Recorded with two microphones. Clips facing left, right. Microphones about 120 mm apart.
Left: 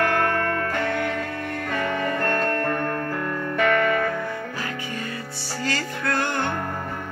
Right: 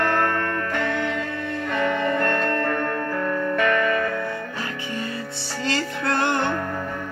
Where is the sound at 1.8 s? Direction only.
20° right (ahead or behind).